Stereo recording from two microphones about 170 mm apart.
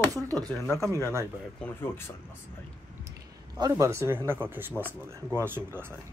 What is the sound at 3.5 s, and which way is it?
Speech, 20° right (ahead or behind).